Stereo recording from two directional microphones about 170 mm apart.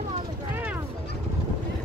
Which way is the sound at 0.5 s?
10° right (ahead or behind).